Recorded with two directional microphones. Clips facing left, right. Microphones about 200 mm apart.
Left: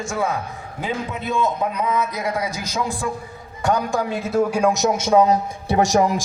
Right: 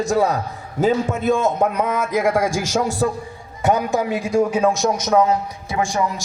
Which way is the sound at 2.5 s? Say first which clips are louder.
Right 7 dB; 90° right.